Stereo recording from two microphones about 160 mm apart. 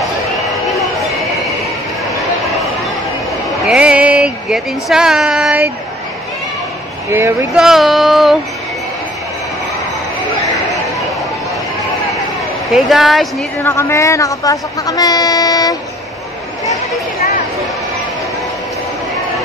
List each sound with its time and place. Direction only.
3.6 s speech: 5° right (ahead or behind)
7.1 s speech: 15° right (ahead or behind)
7.5 s female singing: 5° right (ahead or behind)
12.7 s female singing: centre (ahead or behind)
13.6 s speech: 15° left (ahead or behind)